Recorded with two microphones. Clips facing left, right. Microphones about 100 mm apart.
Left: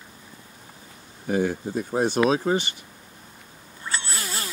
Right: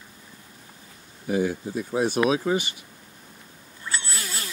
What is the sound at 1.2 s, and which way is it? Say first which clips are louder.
Speech: left 1 dB; 45° left (ahead or behind).